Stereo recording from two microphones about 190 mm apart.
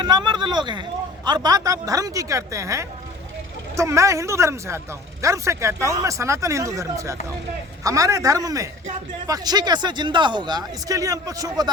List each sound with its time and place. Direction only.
0.0 s a man's voice: 25° right (ahead or behind)